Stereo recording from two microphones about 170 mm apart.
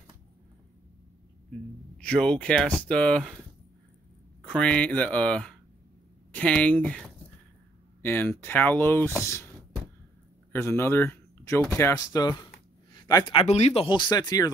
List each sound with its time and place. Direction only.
2.0 s speech: 5° left (ahead or behind)
4.5 s speech: 5° left (ahead or behind)
8.0 s speech: 10° left (ahead or behind)
10.5 s speech: 15° left (ahead or behind)
12.9 s a sound: 25° left (ahead or behind)
13.4 s speech: 40° left (ahead or behind); by 14.5 s 20° left (ahead or behind)